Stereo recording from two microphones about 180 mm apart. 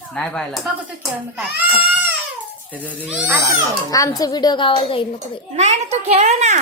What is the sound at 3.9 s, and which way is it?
A child's voice, 20° left (ahead or behind).